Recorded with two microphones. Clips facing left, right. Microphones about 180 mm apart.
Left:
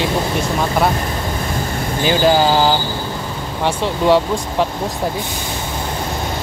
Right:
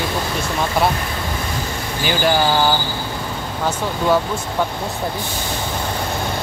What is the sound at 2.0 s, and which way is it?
Speech, 25° left (ahead or behind).